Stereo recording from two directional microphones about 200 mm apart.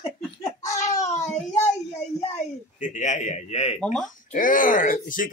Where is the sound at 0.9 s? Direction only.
35° left (ahead or behind).